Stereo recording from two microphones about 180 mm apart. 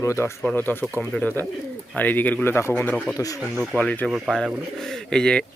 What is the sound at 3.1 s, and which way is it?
Speech, 20° left (ahead or behind).